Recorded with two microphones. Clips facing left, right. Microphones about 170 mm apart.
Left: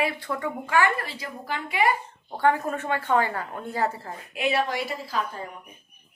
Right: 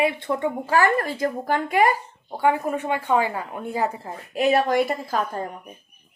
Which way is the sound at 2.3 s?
15° right (ahead or behind).